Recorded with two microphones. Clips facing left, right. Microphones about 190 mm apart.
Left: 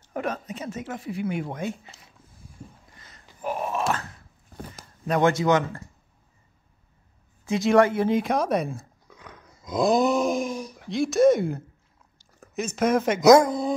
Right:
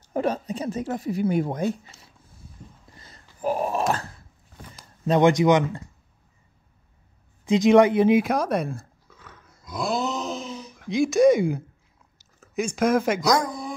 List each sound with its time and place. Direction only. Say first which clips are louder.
0.1 s speech: right 5 dB; 30° right (ahead or behind)
2.9 s a sound: right 2 dB; 30° right (ahead or behind)
5.0 s speech: right 4 dB; 20° right (ahead or behind)
7.4 s speech: right 3 dB; 20° right (ahead or behind)
8.5 s speech: even; centre (ahead or behind)
9.1 s dog: left 4 dB; 15° left (ahead or behind)
9.7 s a sound: left 6 dB; 20° left (ahead or behind)
10.9 s speech: right 1 dB; centre (ahead or behind)
12.7 s speech: even; centre (ahead or behind)
13.2 s speech: left 8 dB; 25° left (ahead or behind)